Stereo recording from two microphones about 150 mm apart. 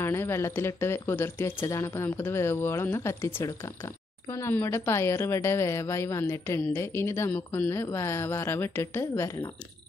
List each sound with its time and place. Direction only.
0.0 s speech: 15° left (ahead or behind)